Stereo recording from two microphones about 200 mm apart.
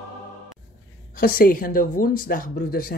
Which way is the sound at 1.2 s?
45° left (ahead or behind).